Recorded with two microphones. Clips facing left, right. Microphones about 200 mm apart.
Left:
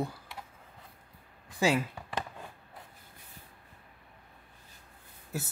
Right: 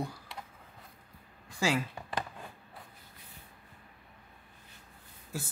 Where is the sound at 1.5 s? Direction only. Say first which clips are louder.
Left 3 dB; 20° left (ahead or behind).